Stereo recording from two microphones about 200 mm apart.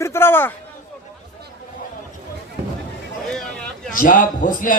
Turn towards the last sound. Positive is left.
turn(degrees=40)  # may be behind; listen again after turning